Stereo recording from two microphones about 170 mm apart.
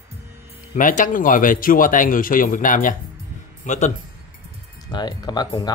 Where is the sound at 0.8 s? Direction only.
50° left (ahead or behind).